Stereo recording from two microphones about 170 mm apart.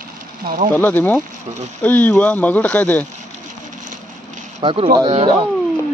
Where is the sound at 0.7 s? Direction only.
10° left (ahead or behind).